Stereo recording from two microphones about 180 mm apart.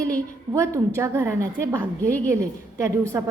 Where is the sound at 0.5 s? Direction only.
15° right (ahead or behind).